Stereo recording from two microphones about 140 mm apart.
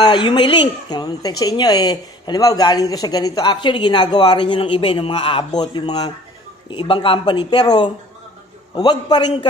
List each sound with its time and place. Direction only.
0.0 s speech: 30° left (ahead or behind)